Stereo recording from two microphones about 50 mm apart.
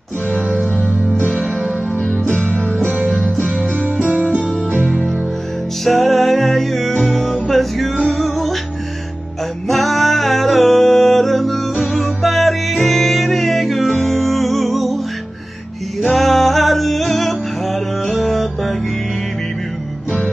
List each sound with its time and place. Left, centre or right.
0.4 s music: centre
2.3 s music: centre
3.3 s music: right
3.7 s music: right
5.9 s music: centre
9.7 s music: centre
16.0 s music: centre